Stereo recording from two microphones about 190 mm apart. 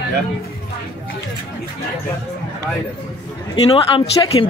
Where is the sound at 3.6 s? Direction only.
30° left (ahead or behind).